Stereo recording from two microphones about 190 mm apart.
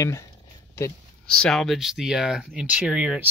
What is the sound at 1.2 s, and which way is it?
Speech, 5° left (ahead or behind).